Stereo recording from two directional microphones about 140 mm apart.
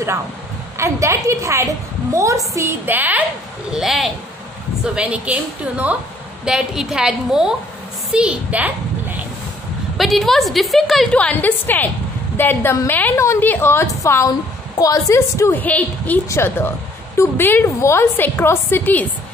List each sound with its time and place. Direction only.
0.7 s a woman's voice: 20° right (ahead or behind)
3.7 s a woman's voice: centre (ahead or behind)
9.9 s a woman's voice: centre (ahead or behind)